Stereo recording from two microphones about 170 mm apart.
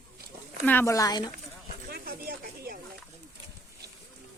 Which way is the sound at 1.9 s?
65° right (ahead or behind).